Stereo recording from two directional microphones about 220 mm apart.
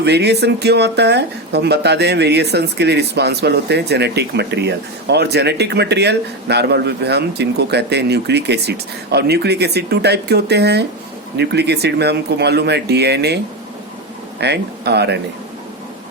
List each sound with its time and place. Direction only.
0.0 s speech: 50° right (ahead or behind)